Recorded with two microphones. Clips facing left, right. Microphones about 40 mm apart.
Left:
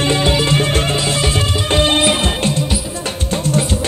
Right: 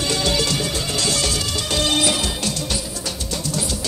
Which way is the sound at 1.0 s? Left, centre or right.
Left.